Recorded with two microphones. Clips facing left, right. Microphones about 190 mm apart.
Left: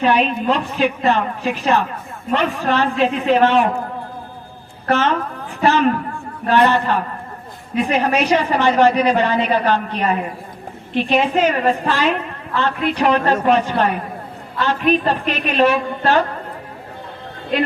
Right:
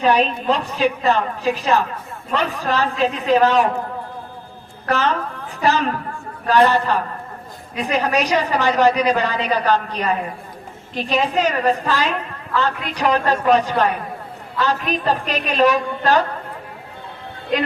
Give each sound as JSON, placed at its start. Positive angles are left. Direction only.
{"t": 0.0, "sound": "a woman's voice", "side_deg": -40}
{"t": 4.9, "sound": "a woman's voice", "side_deg": -35}
{"t": 6.5, "sound": "a woman's voice", "side_deg": -40}